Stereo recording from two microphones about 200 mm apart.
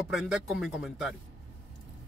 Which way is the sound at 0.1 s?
Centre (ahead or behind).